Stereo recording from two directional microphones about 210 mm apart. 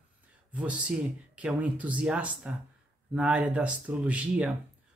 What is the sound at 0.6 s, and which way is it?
Speech, 5° right (ahead or behind).